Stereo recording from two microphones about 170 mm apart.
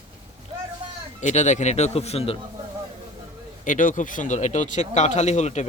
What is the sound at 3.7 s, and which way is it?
A man's voice, 50° left (ahead or behind).